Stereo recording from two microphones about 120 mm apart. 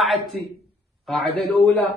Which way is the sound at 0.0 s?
Centre (ahead or behind).